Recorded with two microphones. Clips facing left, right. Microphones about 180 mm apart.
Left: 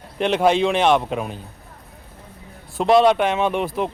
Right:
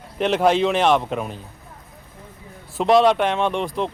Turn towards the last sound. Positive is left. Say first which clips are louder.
# left 1 dB
turn(degrees=5)  # may be behind; listen again after turning